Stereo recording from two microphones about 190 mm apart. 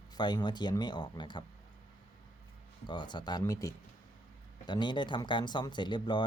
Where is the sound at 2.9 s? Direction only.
25° left (ahead or behind).